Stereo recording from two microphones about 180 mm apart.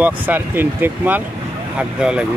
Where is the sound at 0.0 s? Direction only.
10° right (ahead or behind).